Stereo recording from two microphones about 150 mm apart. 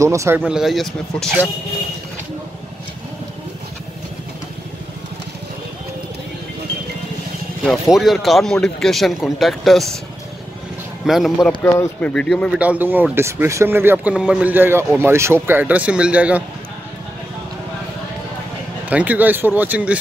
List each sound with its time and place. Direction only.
0.0 s speech: 20° right (ahead or behind)
0.4 s speech: centre (ahead or behind)
7.6 s speech: centre (ahead or behind)
11.1 s speech: centre (ahead or behind)
11.6 s speech: 20° left (ahead or behind)
12.1 s speech: 5° left (ahead or behind)
12.5 s speech: 10° right (ahead or behind)
18.9 s speech: 10° right (ahead or behind)